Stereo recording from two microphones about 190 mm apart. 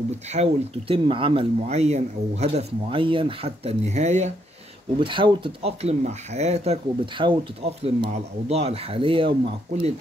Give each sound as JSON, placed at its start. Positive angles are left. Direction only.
{"t": 0.3, "sound": "speech", "side_deg": -30}
{"t": 5.0, "sound": "speech", "side_deg": -25}